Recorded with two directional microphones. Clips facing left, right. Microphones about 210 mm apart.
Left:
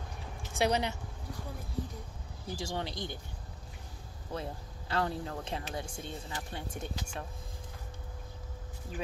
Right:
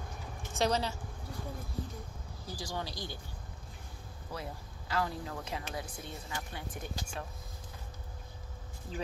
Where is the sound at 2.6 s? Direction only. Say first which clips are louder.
Left 2 dB; 25° left (ahead or behind).